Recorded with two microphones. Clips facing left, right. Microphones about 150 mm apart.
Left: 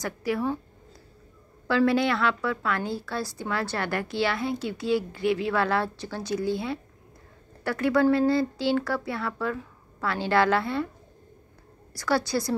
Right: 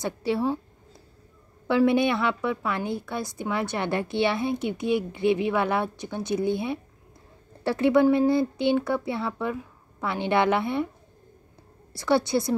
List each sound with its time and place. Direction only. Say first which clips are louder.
0.0 s a woman's voice: right 2 dB; 25° right (ahead or behind)
1.7 s a woman's voice: right 2 dB; 20° right (ahead or behind)
11.9 s a woman's voice: right 3 dB; 25° right (ahead or behind)